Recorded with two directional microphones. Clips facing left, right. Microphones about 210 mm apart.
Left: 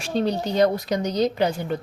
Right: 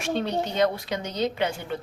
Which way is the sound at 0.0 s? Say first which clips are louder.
Left 3 dB; 35° left (ahead or behind).